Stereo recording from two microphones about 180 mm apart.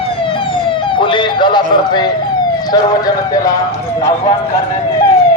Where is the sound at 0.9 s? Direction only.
25° left (ahead or behind).